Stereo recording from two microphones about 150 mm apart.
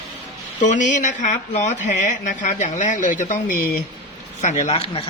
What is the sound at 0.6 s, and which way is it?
Speech, 55° left (ahead or behind).